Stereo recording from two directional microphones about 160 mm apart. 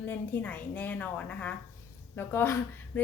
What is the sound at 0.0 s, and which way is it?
A woman's voice, 10° left (ahead or behind).